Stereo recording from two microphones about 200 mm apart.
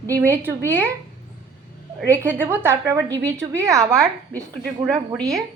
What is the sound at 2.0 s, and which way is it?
A woman's voice, 15° right (ahead or behind).